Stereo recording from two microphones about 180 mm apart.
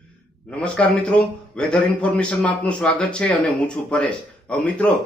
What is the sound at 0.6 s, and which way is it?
Speech, 5° left (ahead or behind).